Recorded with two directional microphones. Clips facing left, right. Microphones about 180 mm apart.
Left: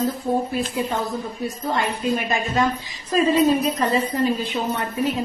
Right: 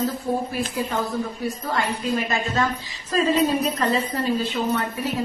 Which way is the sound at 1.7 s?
20° left (ahead or behind).